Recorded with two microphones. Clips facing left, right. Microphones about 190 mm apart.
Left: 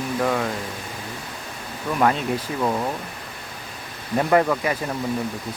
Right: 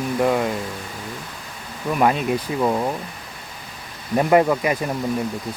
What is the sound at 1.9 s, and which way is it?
Speech, 20° right (ahead or behind).